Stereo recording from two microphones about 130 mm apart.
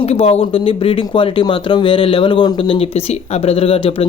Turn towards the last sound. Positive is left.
turn(degrees=50)  # may be behind; listen again after turning